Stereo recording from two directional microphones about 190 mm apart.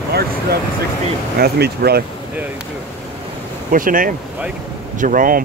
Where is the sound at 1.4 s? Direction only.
55° right (ahead or behind).